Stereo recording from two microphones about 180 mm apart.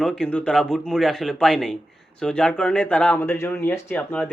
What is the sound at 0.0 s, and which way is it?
A man's voice, 5° left (ahead or behind).